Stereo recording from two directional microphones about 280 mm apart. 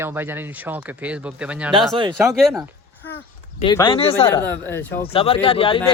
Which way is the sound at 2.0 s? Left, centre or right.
Centre.